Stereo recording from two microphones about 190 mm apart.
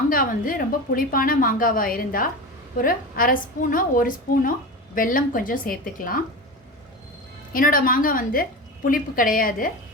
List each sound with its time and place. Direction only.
0.1 s a woman's voice: 45° left (ahead or behind)
7.5 s a woman's voice: 50° left (ahead or behind)